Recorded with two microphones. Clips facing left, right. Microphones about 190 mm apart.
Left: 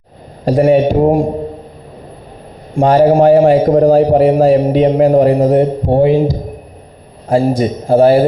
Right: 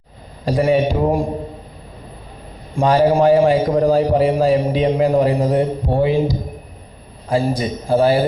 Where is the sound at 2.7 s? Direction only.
50° left (ahead or behind).